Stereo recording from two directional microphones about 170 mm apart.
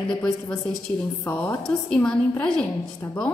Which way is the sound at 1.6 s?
5° left (ahead or behind).